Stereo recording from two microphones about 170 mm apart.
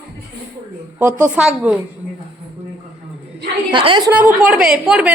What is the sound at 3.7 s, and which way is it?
Speech, 30° right (ahead or behind).